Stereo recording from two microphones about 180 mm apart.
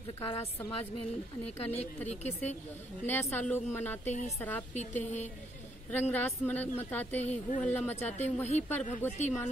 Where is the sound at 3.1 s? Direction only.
10° left (ahead or behind).